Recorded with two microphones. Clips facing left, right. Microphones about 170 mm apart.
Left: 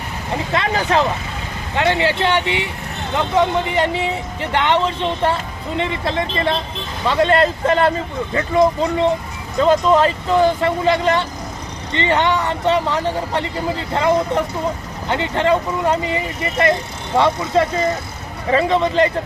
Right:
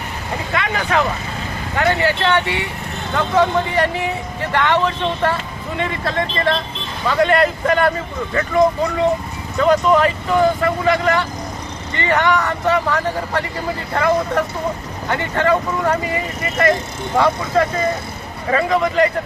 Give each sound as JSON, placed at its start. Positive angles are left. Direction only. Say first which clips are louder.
{"t": 0.5, "sound": "speech", "louder": "left 2 dB", "side_deg": 30}
{"t": 9.6, "sound": "speech", "louder": "even", "side_deg": 30}